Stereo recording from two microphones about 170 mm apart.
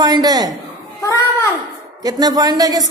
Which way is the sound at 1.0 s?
20° left (ahead or behind).